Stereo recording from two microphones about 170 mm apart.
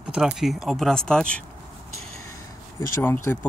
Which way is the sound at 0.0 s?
5° right (ahead or behind).